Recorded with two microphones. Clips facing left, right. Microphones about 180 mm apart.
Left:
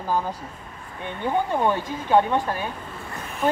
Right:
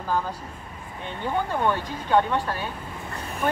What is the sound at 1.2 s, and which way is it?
Speech, 15° left (ahead or behind).